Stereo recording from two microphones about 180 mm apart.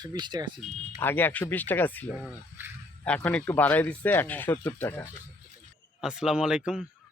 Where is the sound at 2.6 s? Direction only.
10° right (ahead or behind).